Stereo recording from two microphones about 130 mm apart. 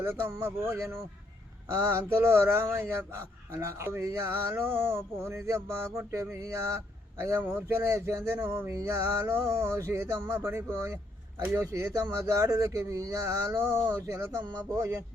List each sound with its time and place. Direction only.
0.0 s a man's voice: 20° right (ahead or behind)